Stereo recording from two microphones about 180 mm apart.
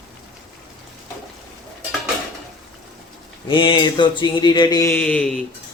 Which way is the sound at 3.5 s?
25° left (ahead or behind).